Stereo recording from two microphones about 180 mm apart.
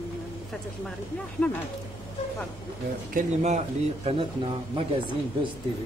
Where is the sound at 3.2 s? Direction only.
40° right (ahead or behind).